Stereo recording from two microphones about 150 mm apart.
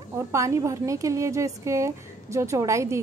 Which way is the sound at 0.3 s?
20° right (ahead or behind).